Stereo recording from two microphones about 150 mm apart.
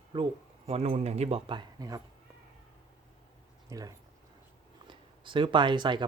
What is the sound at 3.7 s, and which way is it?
Speech, 25° right (ahead or behind).